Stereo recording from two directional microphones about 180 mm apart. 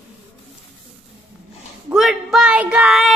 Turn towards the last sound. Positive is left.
turn(degrees=0)  # may be behind; listen again after turning